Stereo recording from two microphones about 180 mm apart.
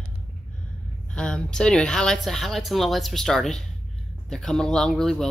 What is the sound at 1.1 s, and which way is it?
Speech, 5° left (ahead or behind).